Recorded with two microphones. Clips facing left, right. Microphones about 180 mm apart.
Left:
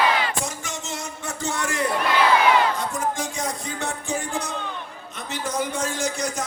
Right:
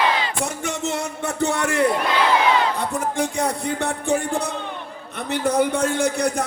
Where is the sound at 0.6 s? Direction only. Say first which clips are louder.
Right 8 dB; 60° right (ahead or behind).